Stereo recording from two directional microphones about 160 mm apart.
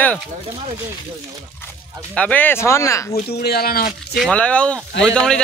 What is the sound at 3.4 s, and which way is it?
Speech, 75° left (ahead or behind).